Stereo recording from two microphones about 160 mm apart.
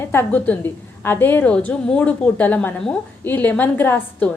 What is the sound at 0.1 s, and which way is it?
A woman's voice, 15° left (ahead or behind).